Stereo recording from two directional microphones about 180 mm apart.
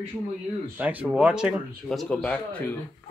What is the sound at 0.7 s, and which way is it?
Speech, 10° right (ahead or behind).